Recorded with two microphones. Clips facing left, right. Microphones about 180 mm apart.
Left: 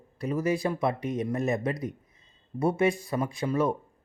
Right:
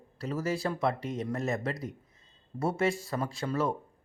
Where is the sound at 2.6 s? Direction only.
15° left (ahead or behind).